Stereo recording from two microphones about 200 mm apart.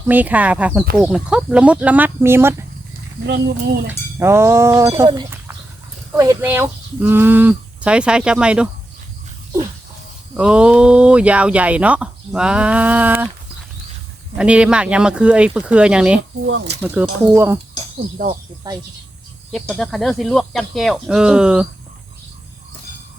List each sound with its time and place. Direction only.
0.1 s speech: 10° right (ahead or behind)
3.2 s speech: 55° right (ahead or behind)
3.8 s speech: 15° right (ahead or behind)
10.3 s speech: 5° right (ahead or behind)
14.3 s speech: 5° right (ahead or behind)
16.5 s speech: 60° right (ahead or behind)
16.8 s speech: 10° right (ahead or behind)
18.7 s speech: 20° right (ahead or behind)
19.5 s speech: centre (ahead or behind)